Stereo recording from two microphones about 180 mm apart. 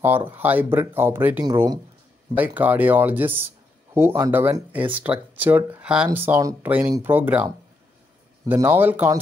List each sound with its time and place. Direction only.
0.0 s speech: 10° right (ahead or behind)
2.3 s speech: 10° right (ahead or behind)
8.5 s speech: 10° right (ahead or behind)